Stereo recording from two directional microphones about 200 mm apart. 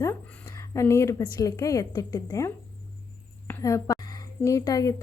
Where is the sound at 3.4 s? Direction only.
15° left (ahead or behind).